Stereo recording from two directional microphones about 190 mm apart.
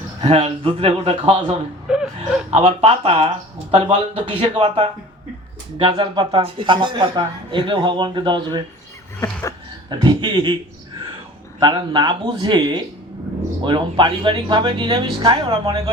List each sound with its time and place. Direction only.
0.3 s speech: 30° right (ahead or behind)
1.9 s whimper: 5° right (ahead or behind)
2.5 s speech: 30° right (ahead or behind)
10.0 s speech: 25° right (ahead or behind)
11.6 s speech: 25° right (ahead or behind)